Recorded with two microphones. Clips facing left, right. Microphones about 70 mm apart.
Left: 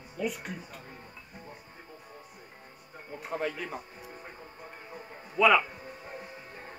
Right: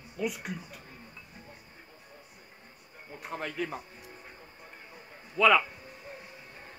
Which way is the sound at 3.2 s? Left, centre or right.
Centre.